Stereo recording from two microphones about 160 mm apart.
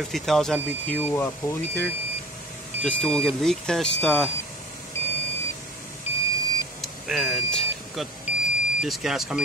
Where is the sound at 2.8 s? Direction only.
5° left (ahead or behind).